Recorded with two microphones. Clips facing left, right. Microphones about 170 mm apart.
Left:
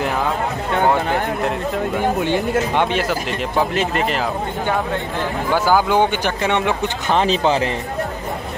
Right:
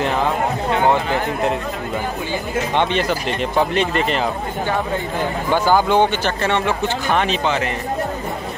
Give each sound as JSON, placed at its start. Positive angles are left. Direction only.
{"t": 2.7, "sound": "speech", "side_deg": 10}
{"t": 5.5, "sound": "speech", "side_deg": 5}
{"t": 7.2, "sound": "speech", "side_deg": 35}